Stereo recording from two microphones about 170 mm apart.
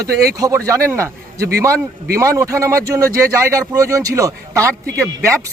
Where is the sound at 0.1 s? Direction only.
70° right (ahead or behind).